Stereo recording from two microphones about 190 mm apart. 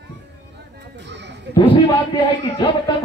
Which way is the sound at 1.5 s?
30° left (ahead or behind).